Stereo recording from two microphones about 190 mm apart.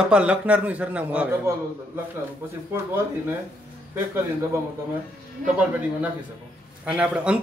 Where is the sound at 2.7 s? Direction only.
10° right (ahead or behind).